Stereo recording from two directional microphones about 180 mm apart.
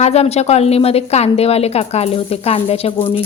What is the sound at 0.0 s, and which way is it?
Speech, 35° left (ahead or behind).